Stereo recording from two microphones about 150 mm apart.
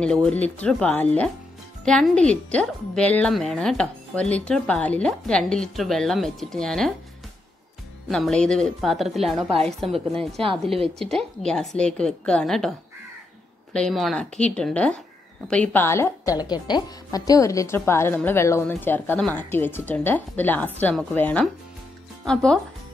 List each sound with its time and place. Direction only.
0.0 s a woman's voice: 5° left (ahead or behind)
8.1 s speech: 5° left (ahead or behind)
13.7 s a woman's voice: centre (ahead or behind)